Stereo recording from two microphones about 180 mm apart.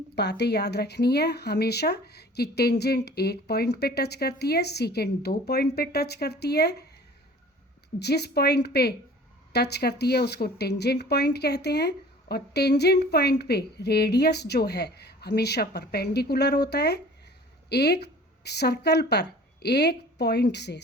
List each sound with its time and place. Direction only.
0.2 s speech: 70° left (ahead or behind)
7.9 s a woman's voice: 65° left (ahead or behind)